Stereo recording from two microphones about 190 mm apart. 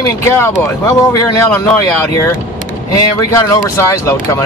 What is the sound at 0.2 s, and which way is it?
Speech, 15° left (ahead or behind).